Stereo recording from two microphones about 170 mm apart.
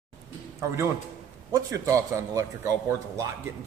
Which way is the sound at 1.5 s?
20° right (ahead or behind).